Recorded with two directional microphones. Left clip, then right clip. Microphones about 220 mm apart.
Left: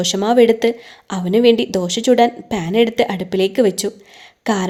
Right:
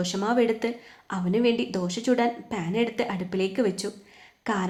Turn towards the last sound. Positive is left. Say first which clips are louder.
# left 9 dB
turn(degrees=40)  # may be behind; listen again after turning